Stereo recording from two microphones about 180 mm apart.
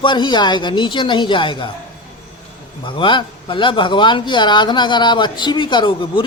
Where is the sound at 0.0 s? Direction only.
25° left (ahead or behind).